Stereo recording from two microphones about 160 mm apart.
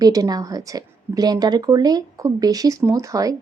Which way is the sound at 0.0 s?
25° right (ahead or behind).